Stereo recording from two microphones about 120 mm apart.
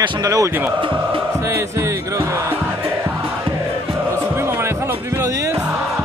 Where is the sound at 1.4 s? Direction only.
25° right (ahead or behind).